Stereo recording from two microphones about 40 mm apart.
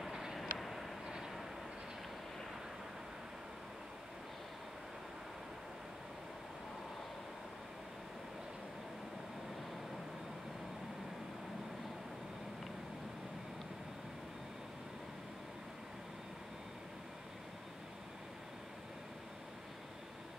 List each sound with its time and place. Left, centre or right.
0.0 s vehicle: centre
0.4 s vehicle: centre
1.0 s vehicle: centre